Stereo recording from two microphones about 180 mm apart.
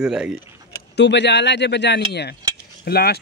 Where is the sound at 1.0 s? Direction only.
75° left (ahead or behind).